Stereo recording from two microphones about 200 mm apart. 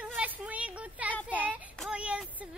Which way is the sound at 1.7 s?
Centre (ahead or behind).